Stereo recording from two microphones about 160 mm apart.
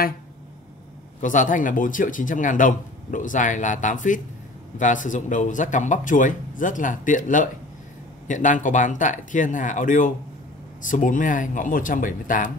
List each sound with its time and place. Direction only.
1.2 s speech: 55° left (ahead or behind)